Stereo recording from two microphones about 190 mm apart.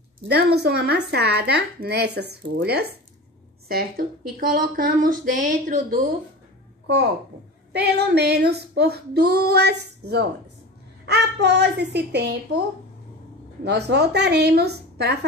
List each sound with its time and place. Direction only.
0.2 s a woman's voice: 60° right (ahead or behind); by 5.9 s 45° right (ahead or behind)
7.7 s speech: 60° right (ahead or behind)
13.7 s speech: 60° right (ahead or behind)